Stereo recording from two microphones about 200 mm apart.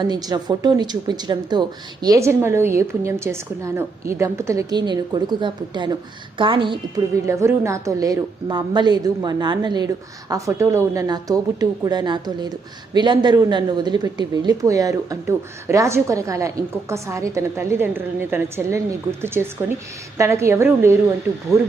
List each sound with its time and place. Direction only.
0.1 s a woman's voice: 20° right (ahead or behind)